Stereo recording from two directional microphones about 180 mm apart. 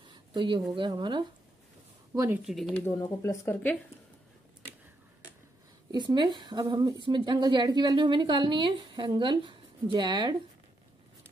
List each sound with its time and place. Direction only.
0.0 s a sound: 25° right (ahead or behind)
0.7 s a woman's voice: 25° right (ahead or behind)
2.1 s speech: 10° right (ahead or behind)
2.4 s speech: centre (ahead or behind)
2.8 s speech: 15° left (ahead or behind)
5.9 s a woman's voice: 25° right (ahead or behind)